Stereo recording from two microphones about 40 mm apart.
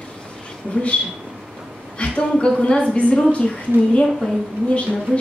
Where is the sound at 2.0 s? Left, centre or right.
Left.